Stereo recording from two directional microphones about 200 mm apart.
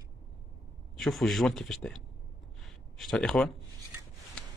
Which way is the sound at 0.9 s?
Centre (ahead or behind).